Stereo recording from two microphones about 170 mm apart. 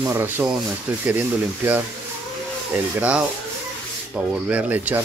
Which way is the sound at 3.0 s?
5° right (ahead or behind).